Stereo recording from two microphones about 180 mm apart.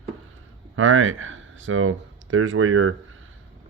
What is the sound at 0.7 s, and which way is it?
Speech, 90° right.